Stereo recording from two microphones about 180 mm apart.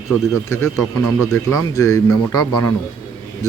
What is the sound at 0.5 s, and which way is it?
Speech, 15° left (ahead or behind).